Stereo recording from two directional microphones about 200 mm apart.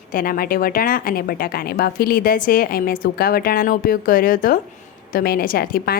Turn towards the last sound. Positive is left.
turn(degrees=50)  # may be behind; listen again after turning